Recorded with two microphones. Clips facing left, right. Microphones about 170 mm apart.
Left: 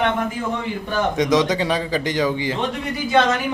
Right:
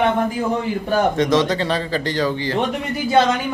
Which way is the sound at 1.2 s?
15° left (ahead or behind).